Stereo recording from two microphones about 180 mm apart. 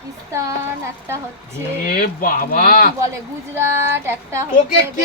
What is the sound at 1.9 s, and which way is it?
Speech, 50° left (ahead or behind).